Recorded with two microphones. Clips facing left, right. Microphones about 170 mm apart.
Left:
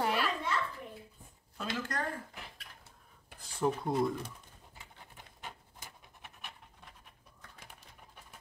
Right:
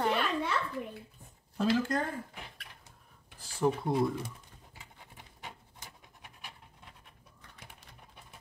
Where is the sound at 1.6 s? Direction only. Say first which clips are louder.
Right 8 dB; 30° right (ahead or behind).